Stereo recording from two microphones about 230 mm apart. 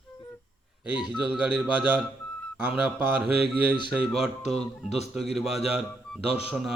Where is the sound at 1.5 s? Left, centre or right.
Centre.